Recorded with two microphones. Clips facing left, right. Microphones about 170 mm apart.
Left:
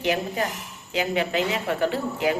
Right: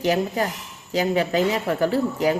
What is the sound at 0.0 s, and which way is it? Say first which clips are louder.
A woman's voice: right 3 dB; 40° right (ahead or behind).